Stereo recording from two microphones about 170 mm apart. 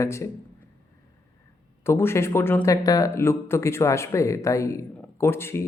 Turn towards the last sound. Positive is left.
turn(degrees=15)  # may be behind; listen again after turning